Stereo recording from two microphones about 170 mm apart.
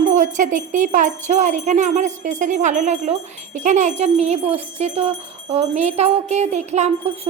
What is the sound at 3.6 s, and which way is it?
Wind chime, 45° right (ahead or behind).